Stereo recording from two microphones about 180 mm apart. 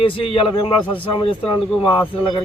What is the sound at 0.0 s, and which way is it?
Speech, 30° left (ahead or behind).